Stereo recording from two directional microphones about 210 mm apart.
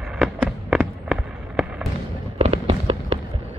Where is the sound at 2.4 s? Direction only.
25° right (ahead or behind).